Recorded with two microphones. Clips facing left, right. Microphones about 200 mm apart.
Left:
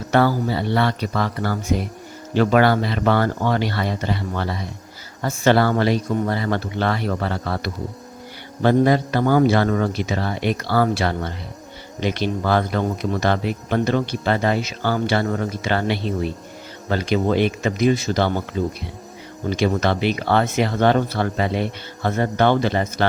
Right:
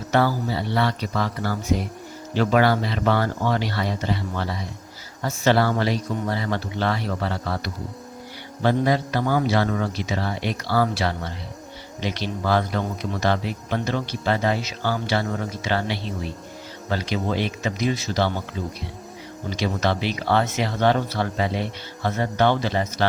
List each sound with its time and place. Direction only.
0.1 s speech: 60° left (ahead or behind)
19.5 s speech: 55° left (ahead or behind)